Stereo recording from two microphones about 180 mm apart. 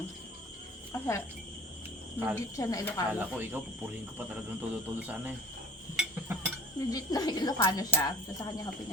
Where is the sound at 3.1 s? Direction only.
10° right (ahead or behind).